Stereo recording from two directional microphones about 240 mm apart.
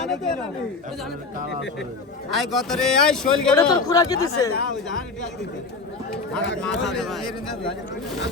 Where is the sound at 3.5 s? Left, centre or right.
Centre.